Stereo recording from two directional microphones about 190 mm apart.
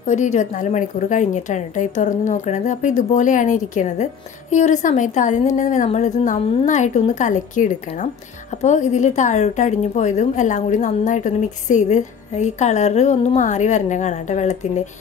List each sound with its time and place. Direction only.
0.0 s a woman's voice: 40° left (ahead or behind)